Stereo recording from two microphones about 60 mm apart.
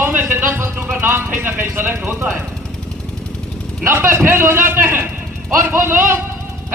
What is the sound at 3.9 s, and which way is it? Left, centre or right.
A man's voice, right.